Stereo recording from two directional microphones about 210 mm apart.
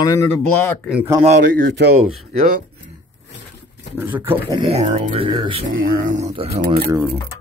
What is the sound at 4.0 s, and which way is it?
Speech, 10° right (ahead or behind).